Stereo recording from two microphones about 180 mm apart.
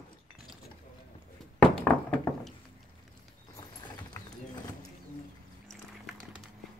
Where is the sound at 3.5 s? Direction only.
20° left (ahead or behind).